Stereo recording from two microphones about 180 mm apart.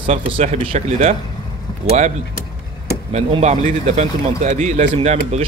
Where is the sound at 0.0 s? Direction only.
30° right (ahead or behind).